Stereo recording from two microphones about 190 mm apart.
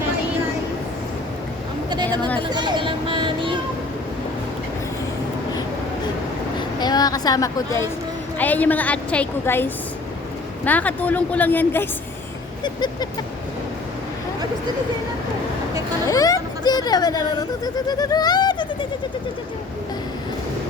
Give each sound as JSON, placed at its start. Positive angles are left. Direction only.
{"t": 2.0, "sound": "a sound", "side_deg": 10}
{"t": 2.5, "sound": "vehicle", "side_deg": -20}
{"t": 6.7, "sound": "a sound", "side_deg": 20}
{"t": 8.4, "sound": "a woman's voice", "side_deg": 10}
{"t": 12.6, "sound": "speech", "side_deg": 20}
{"t": 16.0, "sound": "speech", "side_deg": 20}